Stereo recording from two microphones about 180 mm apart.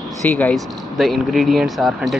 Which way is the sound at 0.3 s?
10° left (ahead or behind).